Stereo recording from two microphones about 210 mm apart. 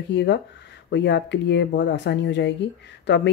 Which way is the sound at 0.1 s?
55° left (ahead or behind).